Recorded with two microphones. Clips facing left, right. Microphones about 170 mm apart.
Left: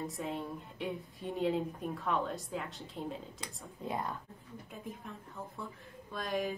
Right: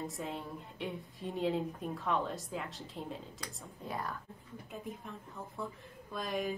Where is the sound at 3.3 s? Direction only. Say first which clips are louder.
Left 1 dB; 20° left (ahead or behind).